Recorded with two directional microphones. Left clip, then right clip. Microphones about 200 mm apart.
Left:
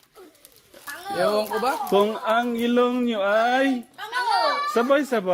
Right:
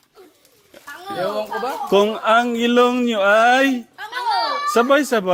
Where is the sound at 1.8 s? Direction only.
35° right (ahead or behind).